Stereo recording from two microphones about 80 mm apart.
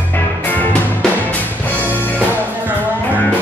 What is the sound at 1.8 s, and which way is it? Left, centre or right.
Music, left.